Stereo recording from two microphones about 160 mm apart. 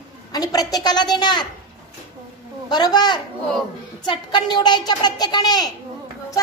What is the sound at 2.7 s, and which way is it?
A child's voice, 25° left (ahead or behind).